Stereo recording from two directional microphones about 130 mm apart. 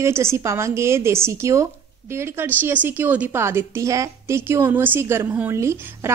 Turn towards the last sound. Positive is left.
turn(degrees=-20)  # may be behind; listen again after turning